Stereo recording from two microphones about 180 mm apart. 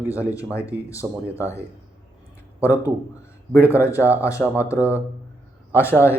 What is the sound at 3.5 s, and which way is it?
Speech, 15° left (ahead or behind).